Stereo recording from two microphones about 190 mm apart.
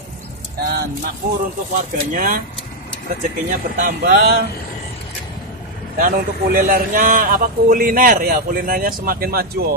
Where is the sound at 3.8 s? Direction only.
50° right (ahead or behind).